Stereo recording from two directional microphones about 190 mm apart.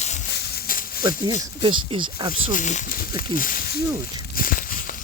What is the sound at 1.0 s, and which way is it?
Speech, 25° right (ahead or behind).